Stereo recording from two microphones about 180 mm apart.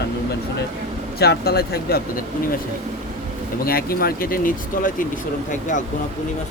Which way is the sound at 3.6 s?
55° left (ahead or behind).